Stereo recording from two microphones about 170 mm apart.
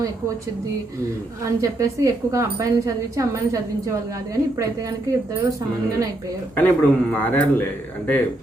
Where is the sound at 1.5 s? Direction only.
20° right (ahead or behind).